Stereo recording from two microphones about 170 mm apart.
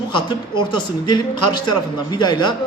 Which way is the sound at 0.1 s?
30° left (ahead or behind).